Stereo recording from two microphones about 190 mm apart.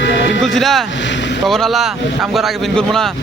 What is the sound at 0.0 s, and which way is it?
Music, 75° left (ahead or behind).